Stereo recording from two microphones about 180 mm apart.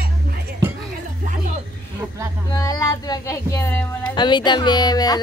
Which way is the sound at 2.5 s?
20° left (ahead or behind).